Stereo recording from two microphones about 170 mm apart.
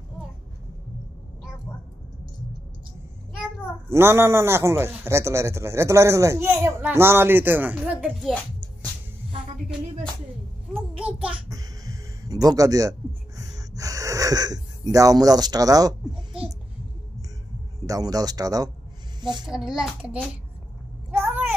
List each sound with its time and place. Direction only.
3.9 s a man's voice: 15° right (ahead or behind)
11.0 s a man's voice: 5° right (ahead or behind)
11.4 s music: 20° right (ahead or behind)
13.5 s speech: 20° right (ahead or behind)
17.8 s speech: 20° right (ahead or behind)
19.4 s a child's voice: 5° right (ahead or behind)
21.2 s a sound: 10° right (ahead or behind)